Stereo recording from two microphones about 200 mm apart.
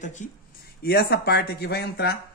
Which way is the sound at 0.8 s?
50° left (ahead or behind).